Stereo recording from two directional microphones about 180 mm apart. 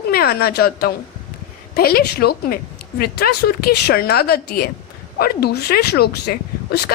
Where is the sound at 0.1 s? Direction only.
60° left (ahead or behind).